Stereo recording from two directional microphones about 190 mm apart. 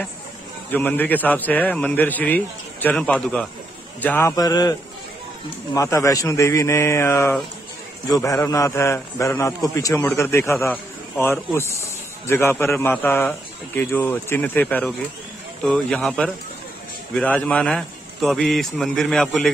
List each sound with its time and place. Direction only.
0.7 s a man's voice: 10° left (ahead or behind)
5.8 s a man's voice: 15° left (ahead or behind)